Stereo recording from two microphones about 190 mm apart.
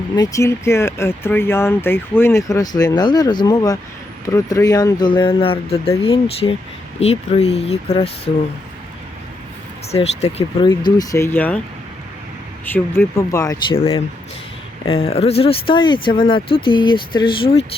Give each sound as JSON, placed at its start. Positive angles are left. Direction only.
{"t": 0.2, "sound": "speech", "side_deg": 15}
{"t": 9.9, "sound": "speech", "side_deg": 35}
{"t": 10.6, "sound": "speech", "side_deg": 25}
{"t": 12.6, "sound": "speech", "side_deg": 10}
{"t": 13.7, "sound": "speech", "side_deg": 30}